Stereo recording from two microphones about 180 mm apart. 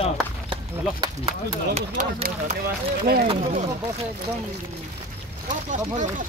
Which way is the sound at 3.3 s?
35° right (ahead or behind).